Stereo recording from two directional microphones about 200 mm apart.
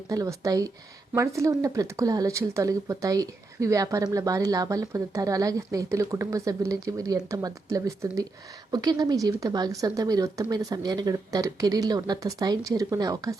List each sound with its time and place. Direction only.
0.1 s speech: 15° right (ahead or behind)